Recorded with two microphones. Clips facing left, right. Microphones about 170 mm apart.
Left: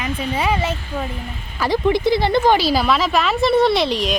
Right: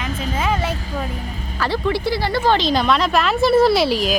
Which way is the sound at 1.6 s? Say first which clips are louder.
Left 3 dB; 15° left (ahead or behind).